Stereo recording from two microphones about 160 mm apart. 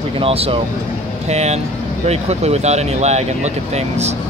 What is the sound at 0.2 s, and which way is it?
Speech, 35° right (ahead or behind).